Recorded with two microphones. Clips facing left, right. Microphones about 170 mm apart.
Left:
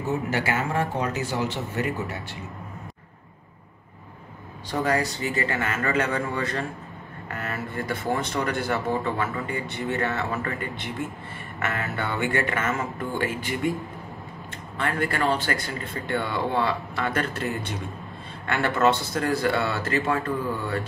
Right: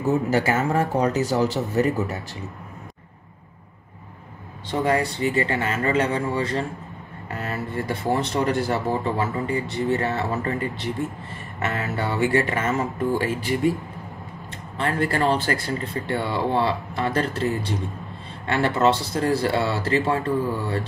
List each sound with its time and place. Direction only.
0.3 s speech: 40° right (ahead or behind)
4.6 s speech: 25° right (ahead or behind)
14.8 s speech: 35° right (ahead or behind)